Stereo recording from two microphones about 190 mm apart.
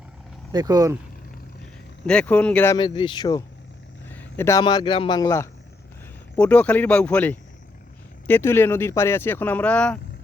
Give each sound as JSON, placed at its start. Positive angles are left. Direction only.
{"t": 0.5, "sound": "speech", "side_deg": -20}
{"t": 2.0, "sound": "speech", "side_deg": 5}
{"t": 2.7, "sound": "speech", "side_deg": 25}
{"t": 6.3, "sound": "speech", "side_deg": 5}